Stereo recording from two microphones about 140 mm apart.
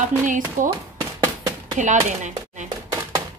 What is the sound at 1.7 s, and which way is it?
Speech, 60° right (ahead or behind).